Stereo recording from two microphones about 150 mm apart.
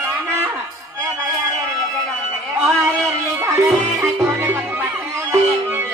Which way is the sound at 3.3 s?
20° right (ahead or behind).